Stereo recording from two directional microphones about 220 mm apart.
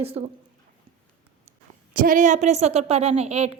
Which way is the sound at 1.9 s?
40° right (ahead or behind).